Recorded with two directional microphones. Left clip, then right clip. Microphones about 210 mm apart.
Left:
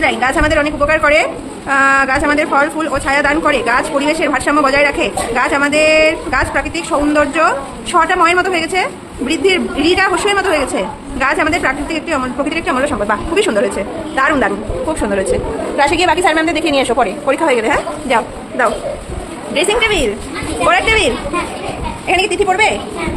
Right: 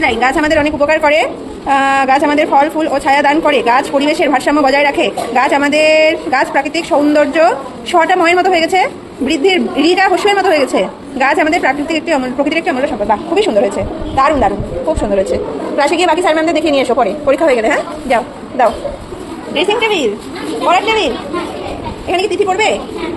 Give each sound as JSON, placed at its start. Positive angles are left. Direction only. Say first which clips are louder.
{"t": 0.0, "sound": "speech", "louder": "right 1 dB", "side_deg": -5}
{"t": 12.7, "sound": "a woman's voice", "louder": "right 1 dB", "side_deg": 5}
{"t": 19.5, "sound": "a woman's voice", "louder": "even", "side_deg": 20}
{"t": 22.0, "sound": "a woman's voice", "louder": "even", "side_deg": 10}